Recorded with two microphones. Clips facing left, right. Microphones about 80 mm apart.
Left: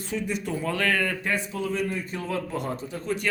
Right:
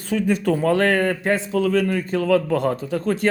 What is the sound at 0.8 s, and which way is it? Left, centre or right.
Speech, right.